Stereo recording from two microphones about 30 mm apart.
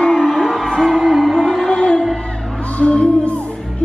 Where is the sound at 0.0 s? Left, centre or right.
Left.